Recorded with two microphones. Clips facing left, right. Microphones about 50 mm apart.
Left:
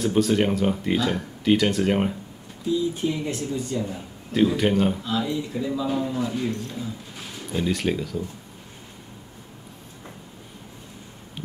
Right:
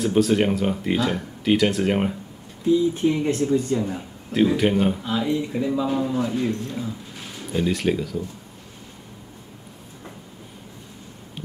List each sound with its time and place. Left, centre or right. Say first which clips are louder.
0.0 s speech: right 2 dB; centre
2.7 s speech: right 5 dB; right
4.3 s speech: right 1 dB; centre
5.0 s speech: right 3 dB; right
5.9 s speech: right 2 dB; centre
6.1 s speech: right 3 dB; right
7.5 s speech: right 2 dB; centre